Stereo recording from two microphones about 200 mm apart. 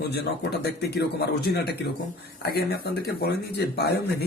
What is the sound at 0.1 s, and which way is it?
A man's voice, 55° left (ahead or behind).